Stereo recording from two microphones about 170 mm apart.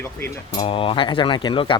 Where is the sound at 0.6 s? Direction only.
35° left (ahead or behind).